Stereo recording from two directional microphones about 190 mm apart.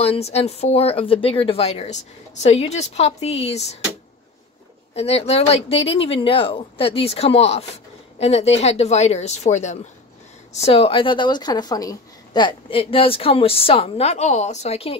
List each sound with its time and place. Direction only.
0.0 s speech: 35° left (ahead or behind)
4.9 s a woman's voice: 35° left (ahead or behind)